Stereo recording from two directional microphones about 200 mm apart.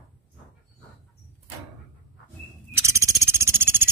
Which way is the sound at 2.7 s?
15° right (ahead or behind).